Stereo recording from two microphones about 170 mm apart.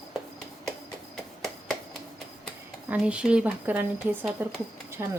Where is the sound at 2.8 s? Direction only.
10° right (ahead or behind).